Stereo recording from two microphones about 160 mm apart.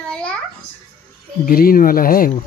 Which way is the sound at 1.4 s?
65° left (ahead or behind).